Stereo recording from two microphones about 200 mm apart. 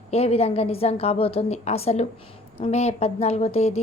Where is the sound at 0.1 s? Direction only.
30° left (ahead or behind).